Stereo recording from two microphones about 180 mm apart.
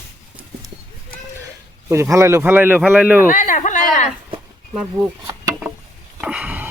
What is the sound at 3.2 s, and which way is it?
Speech, 45° left (ahead or behind).